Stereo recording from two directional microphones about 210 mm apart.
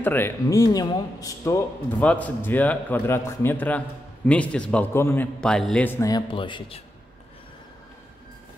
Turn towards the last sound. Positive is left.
turn(degrees=25)  # may be behind; listen again after turning